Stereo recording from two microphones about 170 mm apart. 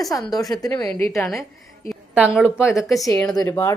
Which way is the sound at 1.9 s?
5° right (ahead or behind).